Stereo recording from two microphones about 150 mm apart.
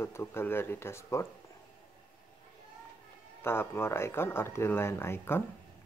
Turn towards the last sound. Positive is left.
turn(degrees=15)  # may be behind; listen again after turning